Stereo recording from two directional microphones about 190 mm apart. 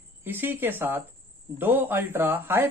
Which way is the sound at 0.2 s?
10° right (ahead or behind).